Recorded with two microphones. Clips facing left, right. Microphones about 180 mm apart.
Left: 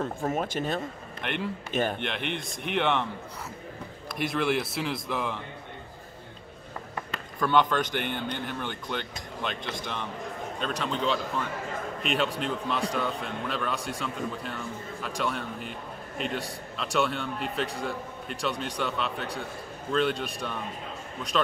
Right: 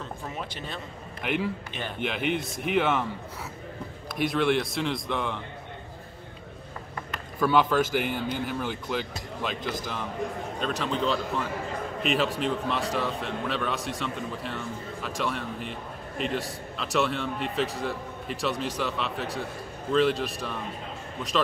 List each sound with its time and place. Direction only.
0.0 s speech: 50° left (ahead or behind)
1.2 s a man's voice: 5° right (ahead or behind)
1.7 s speech: 45° left (ahead or behind)
2.0 s a man's voice: 5° right (ahead or behind)
4.1 s a man's voice: centre (ahead or behind)
7.3 s a man's voice: 5° right (ahead or behind)